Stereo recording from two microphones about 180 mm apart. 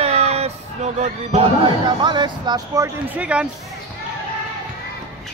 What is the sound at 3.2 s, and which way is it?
Speech, 5° right (ahead or behind).